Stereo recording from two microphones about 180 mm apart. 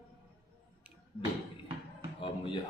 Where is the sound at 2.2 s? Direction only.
30° left (ahead or behind).